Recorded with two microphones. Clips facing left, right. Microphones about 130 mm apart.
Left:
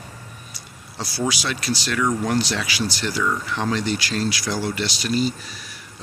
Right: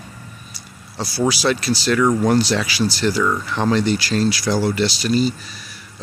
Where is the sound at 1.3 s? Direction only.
35° right (ahead or behind).